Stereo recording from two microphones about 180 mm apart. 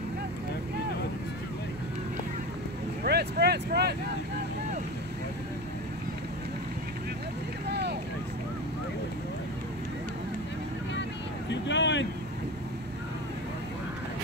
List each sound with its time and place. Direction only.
3.0 s vehicle: 65° right (ahead or behind)
7.6 s vehicle: 65° right (ahead or behind)
11.5 s a sound: 80° left